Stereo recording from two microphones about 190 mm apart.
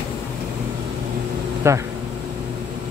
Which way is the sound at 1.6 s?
15° right (ahead or behind).